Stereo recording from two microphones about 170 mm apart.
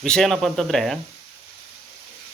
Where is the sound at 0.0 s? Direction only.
5° left (ahead or behind).